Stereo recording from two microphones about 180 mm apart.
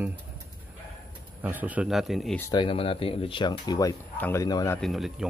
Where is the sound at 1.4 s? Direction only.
10° right (ahead or behind).